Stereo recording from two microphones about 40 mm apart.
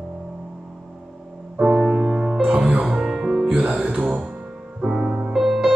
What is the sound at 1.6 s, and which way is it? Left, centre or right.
Music, right.